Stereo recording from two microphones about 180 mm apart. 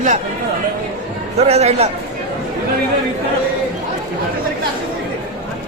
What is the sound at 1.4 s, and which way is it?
Speech, 35° right (ahead or behind).